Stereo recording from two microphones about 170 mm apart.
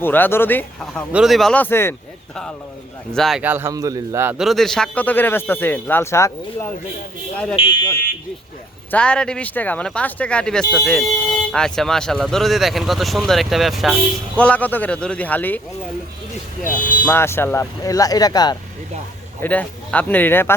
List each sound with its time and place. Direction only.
0.0 s speech: 10° left (ahead or behind)
1.1 s speech: centre (ahead or behind)
3.4 s a man's voice: 10° right (ahead or behind); by 6.7 s 15° left (ahead or behind)
7.5 s speech: 30° left (ahead or behind)
8.9 s speech: 5° left (ahead or behind)
16.6 s speech: 50° left (ahead or behind)
17.1 s speech: 15° left (ahead or behind)
19.4 s speech: 10° left (ahead or behind)